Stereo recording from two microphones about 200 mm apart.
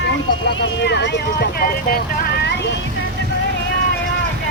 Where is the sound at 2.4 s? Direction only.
60° left (ahead or behind).